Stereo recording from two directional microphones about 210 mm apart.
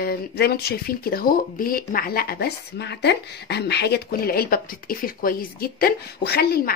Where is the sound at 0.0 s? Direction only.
45° left (ahead or behind).